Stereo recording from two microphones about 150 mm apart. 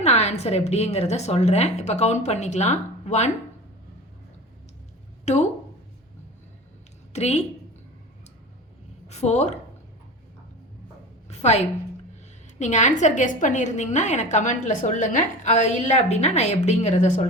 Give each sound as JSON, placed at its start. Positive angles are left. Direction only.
{"t": 0.0, "sound": "a woman's voice", "side_deg": 45}
{"t": 5.2, "sound": "speech", "side_deg": 50}
{"t": 7.1, "sound": "a woman's voice", "side_deg": 45}
{"t": 9.0, "sound": "a woman's voice", "side_deg": 50}
{"t": 11.3, "sound": "a sound", "side_deg": 50}
{"t": 12.5, "sound": "a woman's voice", "side_deg": 55}